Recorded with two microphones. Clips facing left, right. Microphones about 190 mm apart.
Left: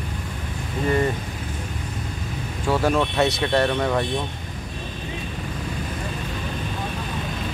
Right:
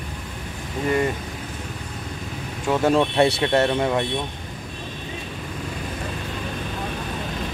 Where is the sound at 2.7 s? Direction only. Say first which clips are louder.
Right 2 dB; 20° right (ahead or behind).